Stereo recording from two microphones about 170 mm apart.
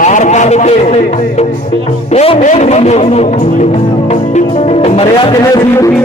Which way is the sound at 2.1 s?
40° left (ahead or behind).